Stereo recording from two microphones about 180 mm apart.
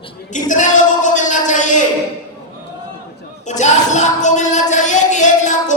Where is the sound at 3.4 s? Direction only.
40° left (ahead or behind).